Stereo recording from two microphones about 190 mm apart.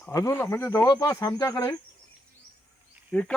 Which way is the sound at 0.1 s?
15° left (ahead or behind).